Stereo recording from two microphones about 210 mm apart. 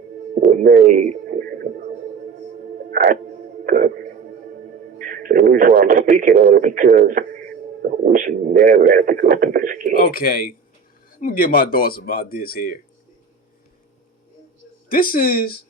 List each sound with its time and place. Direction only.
0.3 s a sound: 40° right (ahead or behind)
2.9 s music: 40° right (ahead or behind)
3.7 s speech: 40° right (ahead or behind)
10.0 s speech: 45° left (ahead or behind)
14.8 s speech: 40° left (ahead or behind)